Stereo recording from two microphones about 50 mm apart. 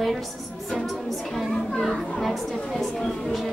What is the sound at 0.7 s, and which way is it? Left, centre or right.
Music, centre.